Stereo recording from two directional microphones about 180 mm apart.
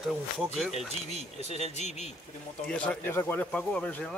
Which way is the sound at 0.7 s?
35° left (ahead or behind).